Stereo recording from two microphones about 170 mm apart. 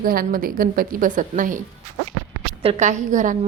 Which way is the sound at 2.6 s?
40° right (ahead or behind).